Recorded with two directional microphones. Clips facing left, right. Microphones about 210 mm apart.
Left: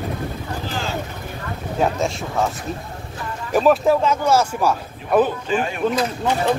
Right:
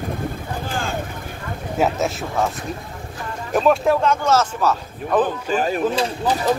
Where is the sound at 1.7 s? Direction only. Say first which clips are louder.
Right 1 dB; 5° right (ahead or behind).